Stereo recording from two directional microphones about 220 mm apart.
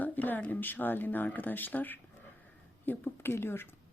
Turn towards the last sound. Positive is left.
turn(degrees=10)  # may be behind; listen again after turning